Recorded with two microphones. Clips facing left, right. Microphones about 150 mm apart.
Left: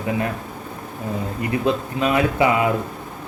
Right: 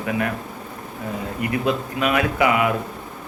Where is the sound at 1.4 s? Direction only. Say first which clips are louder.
Left 1 dB; 25° left (ahead or behind).